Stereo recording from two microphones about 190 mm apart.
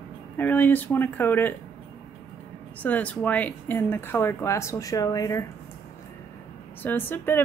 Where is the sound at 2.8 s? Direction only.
10° left (ahead or behind).